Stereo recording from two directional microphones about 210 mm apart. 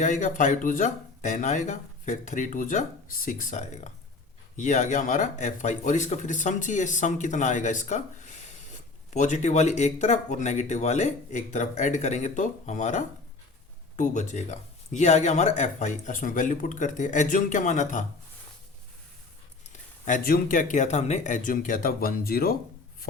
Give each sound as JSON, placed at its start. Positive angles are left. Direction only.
{"t": 0.0, "sound": "speech", "side_deg": 35}
{"t": 20.1, "sound": "speech", "side_deg": 40}